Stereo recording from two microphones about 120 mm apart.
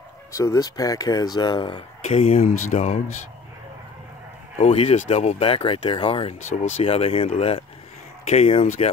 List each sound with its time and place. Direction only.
0.3 s speech: 30° left (ahead or behind)
2.0 s speech: 55° left (ahead or behind)
2.4 s speech: 90° left
4.6 s speech: 60° left (ahead or behind); by 5.4 s 80° left
5.4 s speech: 50° left (ahead or behind)